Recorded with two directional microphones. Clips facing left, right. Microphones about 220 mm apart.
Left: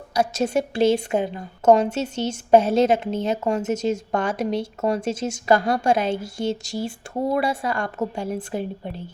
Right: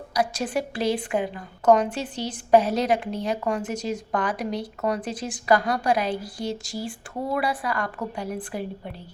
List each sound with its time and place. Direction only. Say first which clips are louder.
0.1 s a woman's voice: left 4 dB; 25° left (ahead or behind)